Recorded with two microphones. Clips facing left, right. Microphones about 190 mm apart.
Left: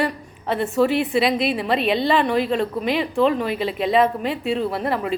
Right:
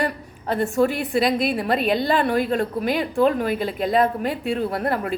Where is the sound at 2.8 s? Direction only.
Centre (ahead or behind).